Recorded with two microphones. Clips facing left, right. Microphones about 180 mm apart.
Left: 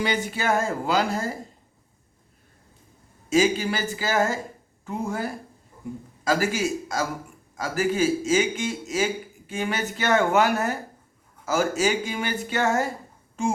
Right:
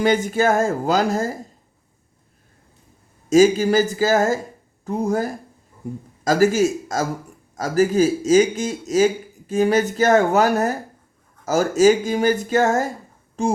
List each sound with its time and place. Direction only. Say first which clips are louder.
0.0 s speech: right 8 dB; 45° right (ahead or behind)
3.2 s a man's voice: right 7 dB; 45° right (ahead or behind)